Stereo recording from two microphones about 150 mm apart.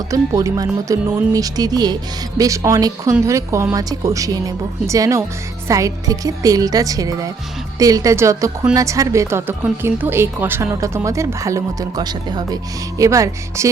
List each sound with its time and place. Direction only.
0.1 s speech: 20° right (ahead or behind)